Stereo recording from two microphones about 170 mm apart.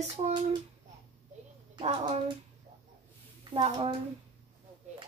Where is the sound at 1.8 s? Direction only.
30° right (ahead or behind).